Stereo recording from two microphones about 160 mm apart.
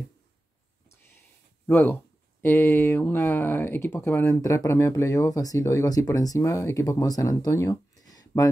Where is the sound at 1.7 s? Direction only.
15° left (ahead or behind).